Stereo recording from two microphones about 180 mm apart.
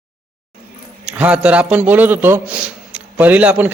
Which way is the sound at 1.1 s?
5° right (ahead or behind).